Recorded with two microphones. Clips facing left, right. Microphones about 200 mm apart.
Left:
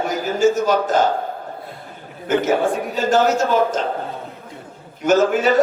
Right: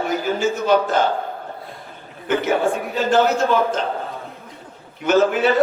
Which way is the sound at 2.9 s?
45° left (ahead or behind).